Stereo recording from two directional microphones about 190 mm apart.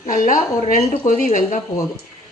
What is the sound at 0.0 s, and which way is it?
A woman's voice, 45° left (ahead or behind).